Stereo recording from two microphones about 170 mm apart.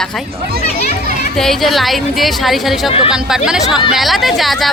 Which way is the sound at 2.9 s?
30° left (ahead or behind).